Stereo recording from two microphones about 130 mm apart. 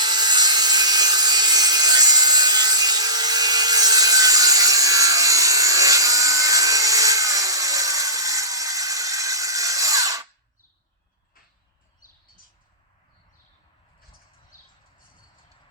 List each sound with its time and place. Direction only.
0.0 s wood: 35° right (ahead or behind)
12.0 s bird: 90° left